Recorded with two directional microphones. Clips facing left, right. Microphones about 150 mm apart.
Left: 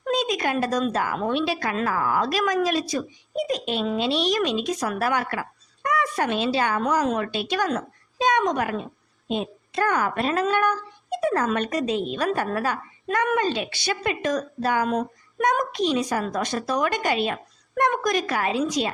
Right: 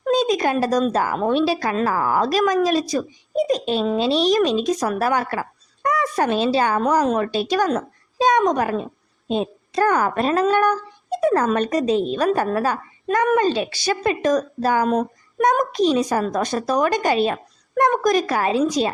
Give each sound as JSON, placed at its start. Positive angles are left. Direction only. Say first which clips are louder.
{"t": 0.0, "sound": "a woman's voice", "louder": "right 6 dB", "side_deg": -35}